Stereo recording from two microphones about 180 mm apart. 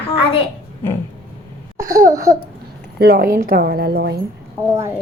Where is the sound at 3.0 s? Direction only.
55° right (ahead or behind).